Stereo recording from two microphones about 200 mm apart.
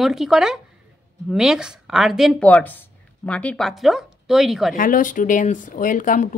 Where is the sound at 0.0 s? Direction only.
Centre (ahead or behind).